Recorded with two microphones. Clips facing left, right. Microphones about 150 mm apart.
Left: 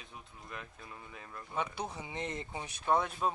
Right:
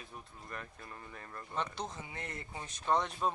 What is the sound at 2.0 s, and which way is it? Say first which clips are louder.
Speech: left 5 dB; 20° left (ahead or behind).